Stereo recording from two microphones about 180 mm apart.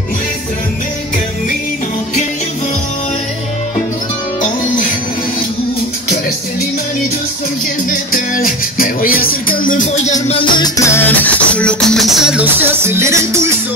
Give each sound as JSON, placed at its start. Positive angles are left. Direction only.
{"t": 8.1, "sound": "music", "side_deg": 50}
{"t": 10.2, "sound": "music", "side_deg": 30}